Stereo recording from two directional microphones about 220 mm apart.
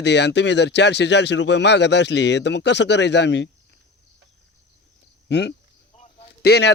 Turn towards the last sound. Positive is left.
turn(degrees=50)  # may be behind; listen again after turning